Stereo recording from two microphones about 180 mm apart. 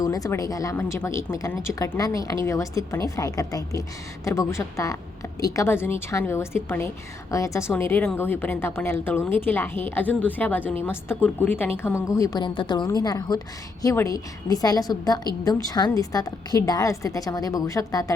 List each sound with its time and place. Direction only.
0.0 s a woman's voice: 20° left (ahead or behind)